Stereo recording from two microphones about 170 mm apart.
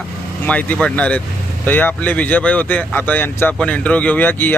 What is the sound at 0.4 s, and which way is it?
Speech, 10° left (ahead or behind).